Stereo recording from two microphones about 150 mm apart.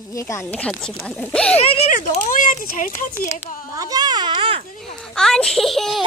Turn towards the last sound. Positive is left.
turn(degrees=0)  # may be behind; listen again after turning